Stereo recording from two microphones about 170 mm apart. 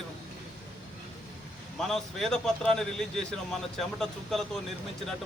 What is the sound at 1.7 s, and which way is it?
A man's voice, centre (ahead or behind).